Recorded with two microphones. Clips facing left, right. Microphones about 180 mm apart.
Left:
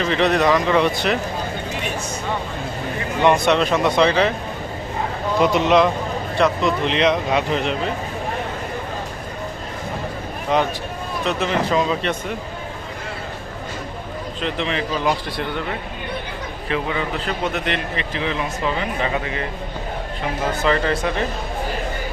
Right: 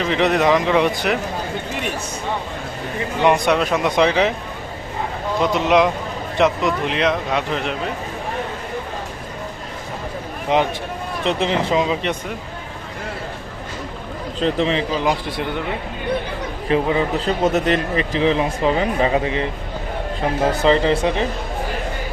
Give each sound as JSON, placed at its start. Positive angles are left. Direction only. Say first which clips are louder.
{"t": 0.0, "sound": "speech", "louder": "right 1 dB", "side_deg": -15}
{"t": 3.2, "sound": "speech", "louder": "even", "side_deg": -10}
{"t": 5.6, "sound": "speech", "louder": "even", "side_deg": -10}
{"t": 6.9, "sound": "a man's voice", "louder": "left 2 dB", "side_deg": 0}
{"t": 11.2, "sound": "speech", "louder": "right 1 dB", "side_deg": -25}
{"t": 14.4, "sound": "speech", "louder": "right 5 dB", "side_deg": -35}
{"t": 15.0, "sound": "speech", "louder": "right 1 dB", "side_deg": -15}
{"t": 16.6, "sound": "speech", "louder": "right 6 dB", "side_deg": -35}
{"t": 20.6, "sound": "speech", "louder": "right 3 dB", "side_deg": -25}